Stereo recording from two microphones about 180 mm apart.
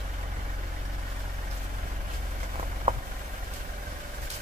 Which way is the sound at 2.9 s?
45° right (ahead or behind).